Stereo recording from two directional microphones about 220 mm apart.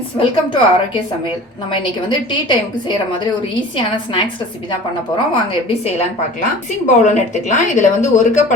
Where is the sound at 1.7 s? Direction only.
20° left (ahead or behind).